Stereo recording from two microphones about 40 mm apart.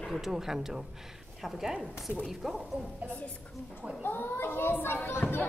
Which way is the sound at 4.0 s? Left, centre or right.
Left.